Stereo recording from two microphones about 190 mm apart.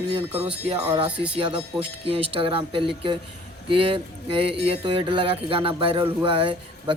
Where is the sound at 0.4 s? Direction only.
30° right (ahead or behind).